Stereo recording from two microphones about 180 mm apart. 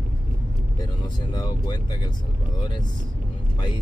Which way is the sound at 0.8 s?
25° left (ahead or behind).